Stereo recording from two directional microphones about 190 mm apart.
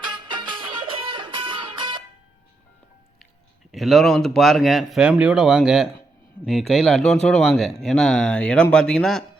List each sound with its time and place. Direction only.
0.0 s music: 25° right (ahead or behind)
3.7 s speech: centre (ahead or behind)